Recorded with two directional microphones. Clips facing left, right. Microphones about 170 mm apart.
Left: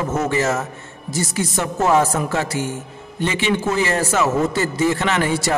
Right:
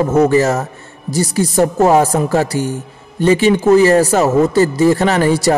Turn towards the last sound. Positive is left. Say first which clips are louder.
# right 7 dB
turn(degrees=-35)  # may be behind; listen again after turning